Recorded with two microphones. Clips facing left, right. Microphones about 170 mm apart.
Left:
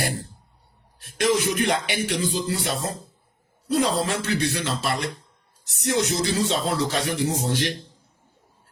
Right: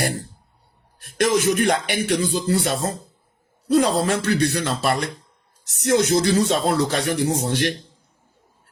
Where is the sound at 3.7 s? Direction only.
50° right (ahead or behind).